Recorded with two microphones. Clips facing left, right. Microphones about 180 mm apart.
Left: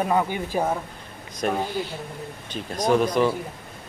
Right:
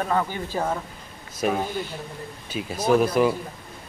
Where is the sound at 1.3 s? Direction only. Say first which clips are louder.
Even; 5° right (ahead or behind).